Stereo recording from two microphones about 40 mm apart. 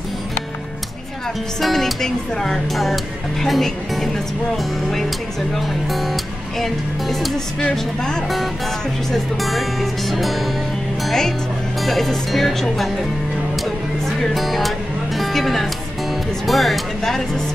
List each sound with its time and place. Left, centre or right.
1.6 s speech: centre
5.5 s speech: centre
7.7 s speech: centre
9.1 s speech: centre
11.1 s speech: centre
14.0 s speech: centre